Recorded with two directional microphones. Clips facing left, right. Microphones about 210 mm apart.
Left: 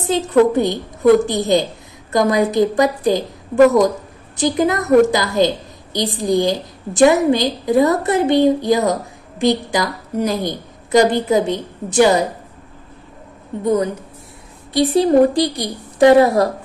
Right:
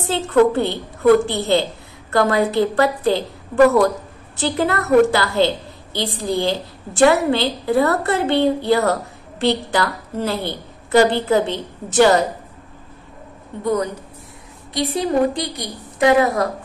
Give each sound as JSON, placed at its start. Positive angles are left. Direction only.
{"t": 0.0, "sound": "a woman's voice", "side_deg": 15}
{"t": 14.7, "sound": "a woman's voice", "side_deg": 35}